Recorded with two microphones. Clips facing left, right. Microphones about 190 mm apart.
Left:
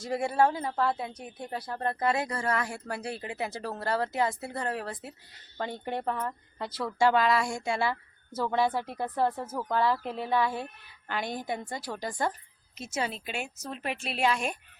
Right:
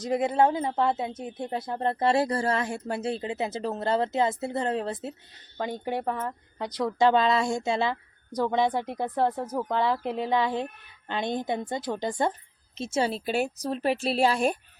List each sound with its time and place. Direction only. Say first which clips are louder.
0.0 s speech: right 3 dB; 20° right (ahead or behind)
5.5 s a woman's voice: right 3 dB; 15° right (ahead or behind); by 14.6 s 35° right (ahead or behind)